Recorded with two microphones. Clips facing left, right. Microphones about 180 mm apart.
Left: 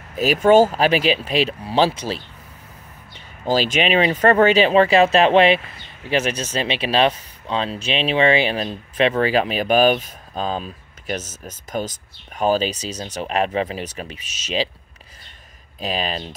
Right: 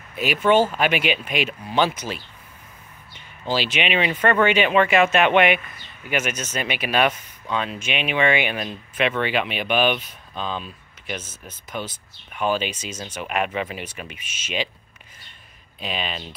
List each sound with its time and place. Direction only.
0.1 s speech: 40° left (ahead or behind)
3.4 s speech: 45° left (ahead or behind)
15.8 s speech: 40° left (ahead or behind)